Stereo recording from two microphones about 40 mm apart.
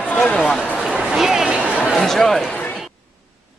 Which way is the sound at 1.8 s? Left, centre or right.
Centre.